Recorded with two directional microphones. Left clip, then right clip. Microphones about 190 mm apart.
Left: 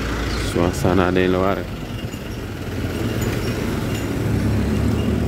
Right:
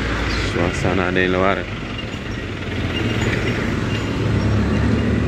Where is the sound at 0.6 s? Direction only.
30° left (ahead or behind).